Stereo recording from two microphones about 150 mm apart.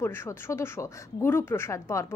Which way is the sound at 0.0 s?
15° left (ahead or behind).